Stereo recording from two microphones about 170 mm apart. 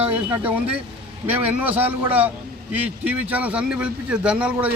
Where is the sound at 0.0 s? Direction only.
10° right (ahead or behind).